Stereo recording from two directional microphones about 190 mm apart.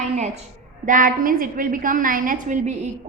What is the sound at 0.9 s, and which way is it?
A woman's voice, 45° right (ahead or behind).